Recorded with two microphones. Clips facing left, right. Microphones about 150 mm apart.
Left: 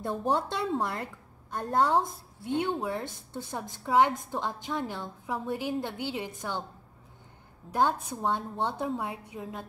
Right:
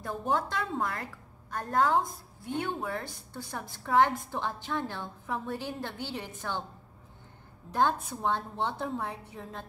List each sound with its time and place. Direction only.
0.0 s a woman's voice: 25° left (ahead or behind)
7.7 s a woman's voice: 10° left (ahead or behind)